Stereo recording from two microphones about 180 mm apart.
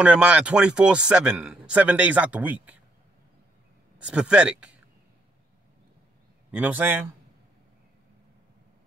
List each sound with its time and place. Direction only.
0.0 s a man's voice: 5° right (ahead or behind)
4.0 s speech: 5° right (ahead or behind)
6.5 s a man's voice: 10° right (ahead or behind)